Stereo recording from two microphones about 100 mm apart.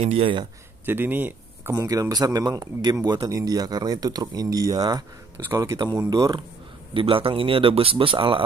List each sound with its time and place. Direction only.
0.8 s speech: 20° right (ahead or behind)
1.7 s speech: 35° right (ahead or behind)
6.9 s a man's voice: 60° right (ahead or behind)